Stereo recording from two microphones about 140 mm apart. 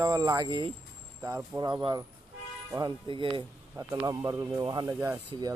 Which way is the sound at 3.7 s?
25° right (ahead or behind).